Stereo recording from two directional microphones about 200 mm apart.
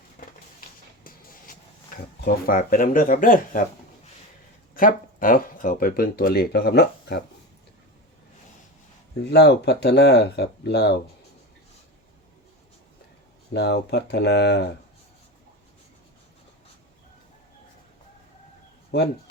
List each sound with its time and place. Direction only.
0.2 s a sound: 45° left (ahead or behind)
1.0 s shuffle: 45° left (ahead or behind)
2.2 s speech: 45° left (ahead or behind)
4.7 s speech: 45° left (ahead or behind)
9.3 s speech: 55° left (ahead or behind)
13.5 s speech: 55° left (ahead or behind)